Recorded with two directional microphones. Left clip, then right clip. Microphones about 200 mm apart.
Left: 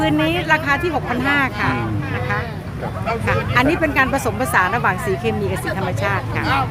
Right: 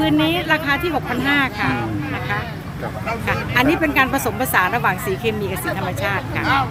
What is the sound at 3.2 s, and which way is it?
Speech, centre (ahead or behind).